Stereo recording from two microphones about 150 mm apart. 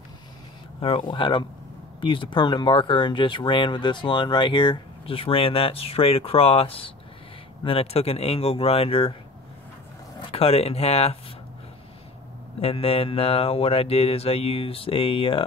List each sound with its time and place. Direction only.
0.7 s speech: 35° left (ahead or behind)
10.3 s speech: 40° left (ahead or behind)
12.5 s speech: 40° left (ahead or behind)